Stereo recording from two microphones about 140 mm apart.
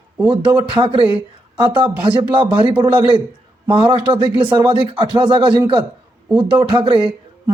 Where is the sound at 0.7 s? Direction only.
35° right (ahead or behind).